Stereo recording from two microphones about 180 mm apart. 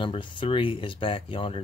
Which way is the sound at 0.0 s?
25° left (ahead or behind).